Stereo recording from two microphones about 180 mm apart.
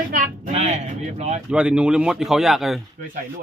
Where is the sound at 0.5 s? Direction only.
35° right (ahead or behind).